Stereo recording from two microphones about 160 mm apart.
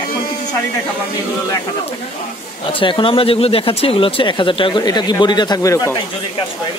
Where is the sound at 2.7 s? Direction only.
30° left (ahead or behind).